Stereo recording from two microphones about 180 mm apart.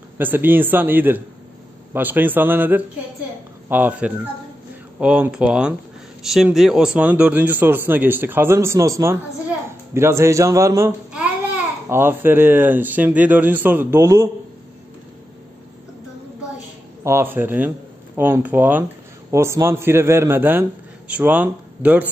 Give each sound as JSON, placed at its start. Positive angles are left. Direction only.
{"t": 0.2, "sound": "a man's voice", "side_deg": -10}
{"t": 11.9, "sound": "a man's voice", "side_deg": -10}
{"t": 17.0, "sound": "a man's voice", "side_deg": -15}